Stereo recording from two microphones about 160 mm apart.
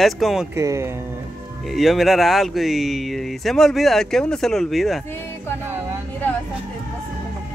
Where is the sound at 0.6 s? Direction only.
20° right (ahead or behind).